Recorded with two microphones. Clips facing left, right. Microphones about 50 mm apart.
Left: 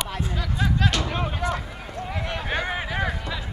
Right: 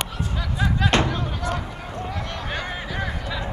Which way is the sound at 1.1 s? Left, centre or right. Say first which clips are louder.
Left 1 dB; left.